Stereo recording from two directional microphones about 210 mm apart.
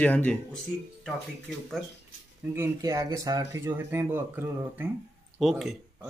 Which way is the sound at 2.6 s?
15° right (ahead or behind).